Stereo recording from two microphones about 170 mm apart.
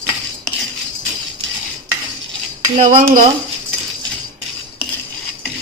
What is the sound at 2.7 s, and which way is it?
Speech, 50° right (ahead or behind).